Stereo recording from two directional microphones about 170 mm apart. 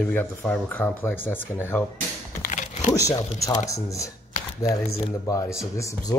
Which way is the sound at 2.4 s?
45° left (ahead or behind).